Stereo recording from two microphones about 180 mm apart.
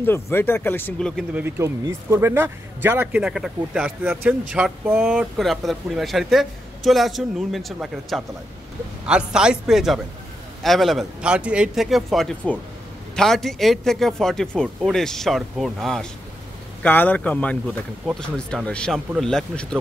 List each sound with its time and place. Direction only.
0.0 s speech: 10° left (ahead or behind)
1.3 s a man's voice: 15° right (ahead or behind); by 19.8 s 5° left (ahead or behind)